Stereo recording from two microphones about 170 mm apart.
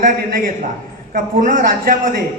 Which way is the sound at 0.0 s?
55° right (ahead or behind).